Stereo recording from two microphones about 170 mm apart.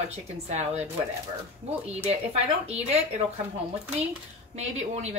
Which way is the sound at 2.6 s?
40° right (ahead or behind).